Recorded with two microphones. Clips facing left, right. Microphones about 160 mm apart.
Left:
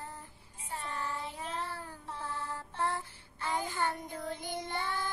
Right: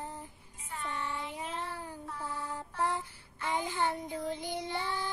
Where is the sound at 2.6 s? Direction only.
15° right (ahead or behind).